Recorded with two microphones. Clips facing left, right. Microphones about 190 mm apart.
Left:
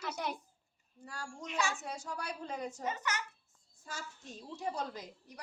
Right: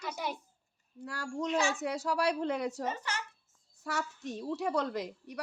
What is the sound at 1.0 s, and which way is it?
A woman's voice, 80° right.